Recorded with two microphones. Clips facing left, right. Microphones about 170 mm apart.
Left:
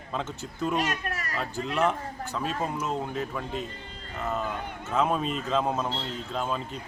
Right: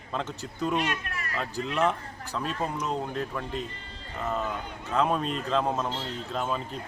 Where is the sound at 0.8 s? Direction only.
40° left (ahead or behind).